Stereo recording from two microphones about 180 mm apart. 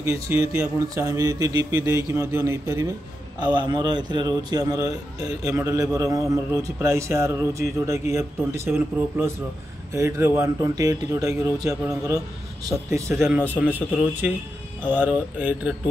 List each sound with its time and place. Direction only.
0.0 s a man's voice: 15° right (ahead or behind)
11.5 s a man's voice: 5° right (ahead or behind)
12.6 s a man's voice: 15° right (ahead or behind)